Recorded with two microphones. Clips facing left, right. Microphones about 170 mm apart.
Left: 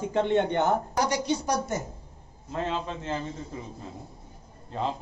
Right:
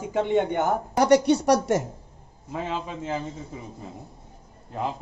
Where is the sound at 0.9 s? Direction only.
65° right (ahead or behind); by 1.8 s 85° right.